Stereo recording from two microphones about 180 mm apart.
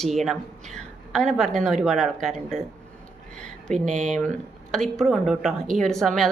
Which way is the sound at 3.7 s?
Centre (ahead or behind).